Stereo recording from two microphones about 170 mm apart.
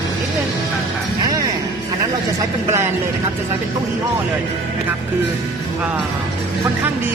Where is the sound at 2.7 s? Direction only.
15° right (ahead or behind).